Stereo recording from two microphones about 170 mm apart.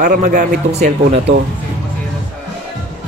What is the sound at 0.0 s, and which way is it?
A man's voice, 45° right (ahead or behind).